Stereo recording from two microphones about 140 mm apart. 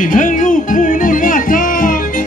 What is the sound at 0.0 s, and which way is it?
Music, 70° left (ahead or behind).